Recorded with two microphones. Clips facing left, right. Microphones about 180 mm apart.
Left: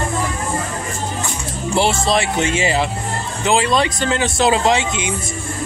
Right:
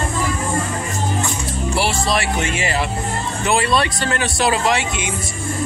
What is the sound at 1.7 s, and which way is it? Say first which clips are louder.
Speech: left 4 dB; 25° left (ahead or behind).